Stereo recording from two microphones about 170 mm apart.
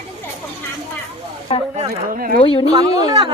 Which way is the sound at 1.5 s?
30° left (ahead or behind).